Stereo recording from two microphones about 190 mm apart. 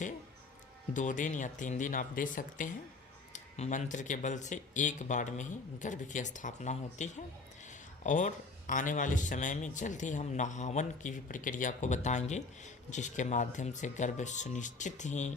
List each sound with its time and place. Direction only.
0.9 s a man's voice: 40° left (ahead or behind)